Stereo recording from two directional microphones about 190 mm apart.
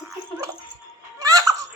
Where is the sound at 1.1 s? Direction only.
15° right (ahead or behind).